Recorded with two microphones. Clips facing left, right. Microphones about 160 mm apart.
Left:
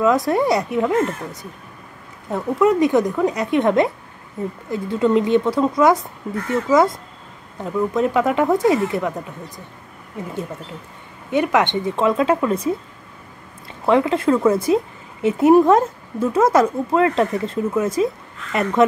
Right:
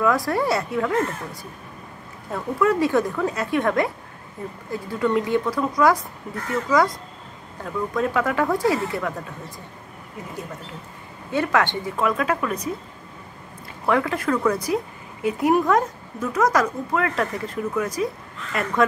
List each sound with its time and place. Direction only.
0.0 s speech: 20° left (ahead or behind)
11.2 s speech: 20° left (ahead or behind)
13.8 s speech: 20° left (ahead or behind)